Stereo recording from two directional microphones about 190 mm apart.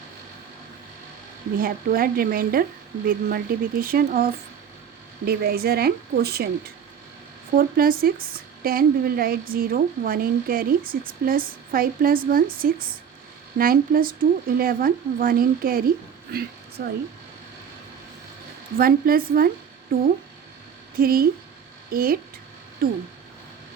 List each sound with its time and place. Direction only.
1.5 s a woman's voice: 50° right (ahead or behind)
7.5 s a woman's voice: 50° right (ahead or behind)
18.8 s a woman's voice: 50° right (ahead or behind)